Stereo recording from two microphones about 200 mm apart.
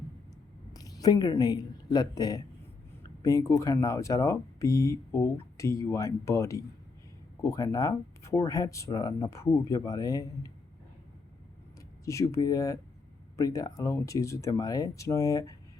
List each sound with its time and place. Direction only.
0.7 s a woman's voice: 20° left (ahead or behind)
12.0 s speech: 15° left (ahead or behind)